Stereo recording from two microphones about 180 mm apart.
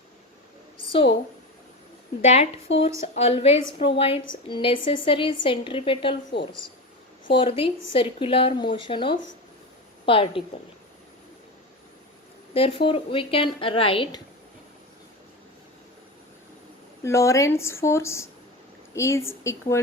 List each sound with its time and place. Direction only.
2.2 s a woman's voice: 35° left (ahead or behind)
2.7 s speech: 90° left
3.2 s a woman's voice: 35° left (ahead or behind)
12.5 s a woman's voice: 30° left (ahead or behind)
17.0 s speech: 15° left (ahead or behind)